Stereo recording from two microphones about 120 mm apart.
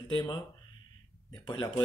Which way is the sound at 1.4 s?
40° left (ahead or behind).